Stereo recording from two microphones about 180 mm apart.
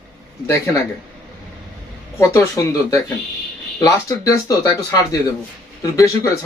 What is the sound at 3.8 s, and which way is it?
Speech, 20° left (ahead or behind).